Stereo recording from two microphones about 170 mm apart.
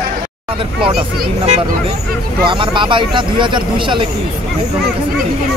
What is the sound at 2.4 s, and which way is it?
Speech, 30° right (ahead or behind).